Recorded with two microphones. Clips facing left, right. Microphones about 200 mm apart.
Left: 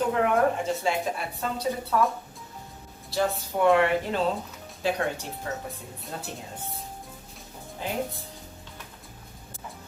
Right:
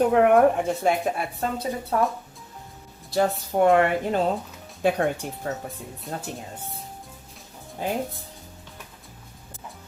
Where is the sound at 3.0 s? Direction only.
50° right (ahead or behind).